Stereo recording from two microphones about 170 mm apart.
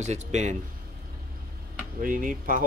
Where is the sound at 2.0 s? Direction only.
55° right (ahead or behind).